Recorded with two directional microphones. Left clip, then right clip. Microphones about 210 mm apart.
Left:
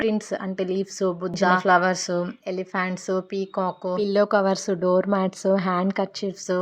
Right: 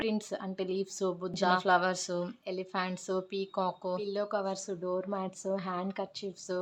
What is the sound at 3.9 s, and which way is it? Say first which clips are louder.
Speech: left 13 dB; 35° left (ahead or behind).